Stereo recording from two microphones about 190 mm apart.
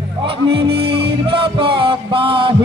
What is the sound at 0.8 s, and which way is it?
Music, 25° right (ahead or behind).